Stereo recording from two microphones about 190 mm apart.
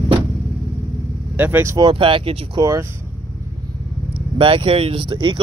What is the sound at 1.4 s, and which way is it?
Speech, 10° right (ahead or behind).